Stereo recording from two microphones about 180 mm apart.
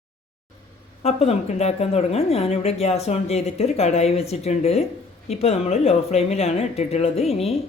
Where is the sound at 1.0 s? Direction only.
35° left (ahead or behind).